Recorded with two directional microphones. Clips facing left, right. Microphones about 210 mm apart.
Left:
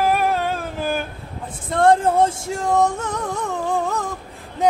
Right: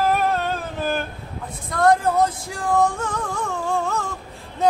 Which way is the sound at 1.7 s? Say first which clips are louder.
Left 2 dB; 30° left (ahead or behind).